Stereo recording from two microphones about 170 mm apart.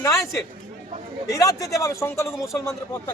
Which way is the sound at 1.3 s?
20° left (ahead or behind).